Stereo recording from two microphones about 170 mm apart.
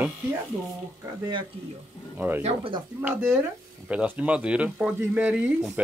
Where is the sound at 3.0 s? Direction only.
15° right (ahead or behind).